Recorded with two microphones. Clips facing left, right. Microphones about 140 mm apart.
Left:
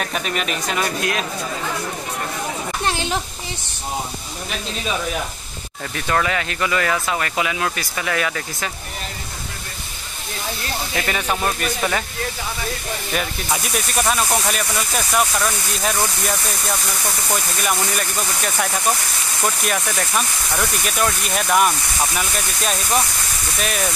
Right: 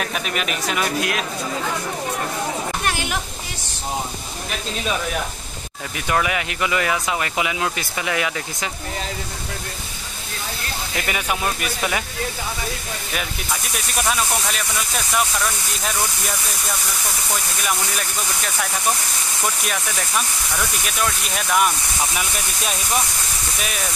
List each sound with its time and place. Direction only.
0.0 s speech: 5° right (ahead or behind)
2.8 s a sound: 25° left (ahead or behind)
5.9 s speech: 15° right (ahead or behind)
11.1 s speech: 10° right (ahead or behind)
13.7 s speech: centre (ahead or behind)
17.3 s speech: 5° left (ahead or behind)